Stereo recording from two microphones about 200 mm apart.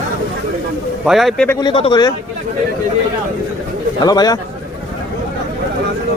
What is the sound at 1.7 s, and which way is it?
Speech, 25° left (ahead or behind).